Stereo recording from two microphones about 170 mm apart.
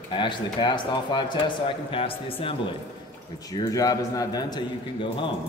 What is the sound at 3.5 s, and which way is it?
Speech, 20° left (ahead or behind).